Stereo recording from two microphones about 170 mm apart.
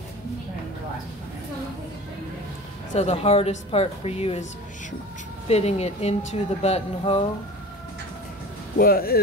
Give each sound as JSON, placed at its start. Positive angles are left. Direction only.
{"t": 2.9, "sound": "speech", "side_deg": 40}
{"t": 5.5, "sound": "speech", "side_deg": 40}
{"t": 8.7, "sound": "speech", "side_deg": 60}